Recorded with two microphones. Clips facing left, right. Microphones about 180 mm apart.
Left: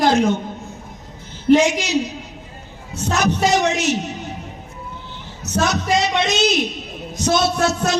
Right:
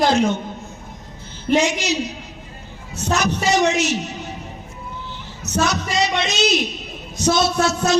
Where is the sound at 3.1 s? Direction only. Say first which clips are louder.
Left 2 dB; 55° left (ahead or behind).